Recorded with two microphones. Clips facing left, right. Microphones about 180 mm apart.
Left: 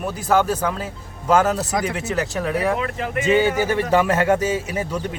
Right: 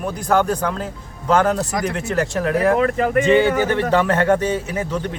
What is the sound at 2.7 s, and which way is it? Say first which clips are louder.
Speech: right 7 dB; 45° right (ahead or behind).